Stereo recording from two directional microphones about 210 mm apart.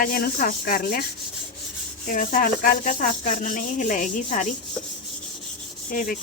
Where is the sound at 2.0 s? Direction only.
40° left (ahead or behind).